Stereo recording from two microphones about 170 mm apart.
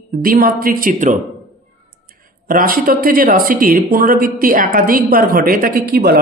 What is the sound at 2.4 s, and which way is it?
A woman's voice, 55° right (ahead or behind).